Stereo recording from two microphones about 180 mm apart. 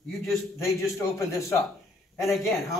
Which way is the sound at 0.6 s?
15° left (ahead or behind).